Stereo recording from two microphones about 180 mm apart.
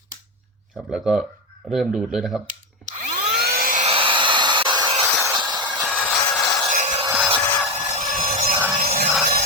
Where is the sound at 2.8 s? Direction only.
45° right (ahead or behind).